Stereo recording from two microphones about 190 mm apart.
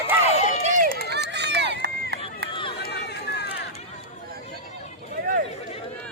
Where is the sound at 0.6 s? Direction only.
45° right (ahead or behind).